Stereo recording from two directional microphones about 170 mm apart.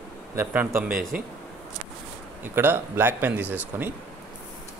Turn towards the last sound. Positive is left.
turn(degrees=-10)  # may be behind; listen again after turning